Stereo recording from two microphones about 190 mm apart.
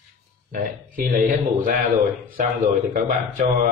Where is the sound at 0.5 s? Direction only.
50° right (ahead or behind).